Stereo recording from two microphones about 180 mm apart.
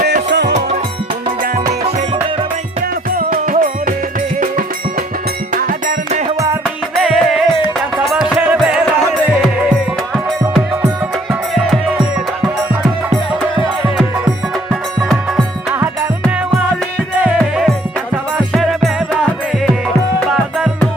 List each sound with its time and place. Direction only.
0.0 s music: 70° right (ahead or behind)
3.2 s music: 50° right (ahead or behind)
6.2 s music: 20° right (ahead or behind)
6.9 s music: centre (ahead or behind)
11.5 s music: centre (ahead or behind)
15.4 s music: 15° right (ahead or behind)
20.1 s music: 5° right (ahead or behind)